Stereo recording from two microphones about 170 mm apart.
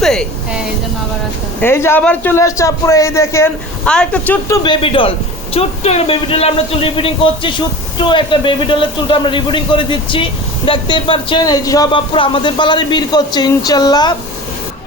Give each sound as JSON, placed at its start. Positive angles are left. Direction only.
{"t": 0.0, "sound": "a woman's voice", "side_deg": 0}
{"t": 1.6, "sound": "a man's voice", "side_deg": 15}
{"t": 3.8, "sound": "speech", "side_deg": 5}